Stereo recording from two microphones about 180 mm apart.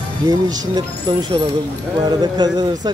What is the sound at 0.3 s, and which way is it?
A man's voice, 20° right (ahead or behind).